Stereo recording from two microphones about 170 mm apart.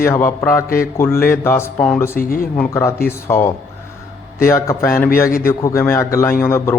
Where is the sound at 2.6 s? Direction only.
15° left (ahead or behind).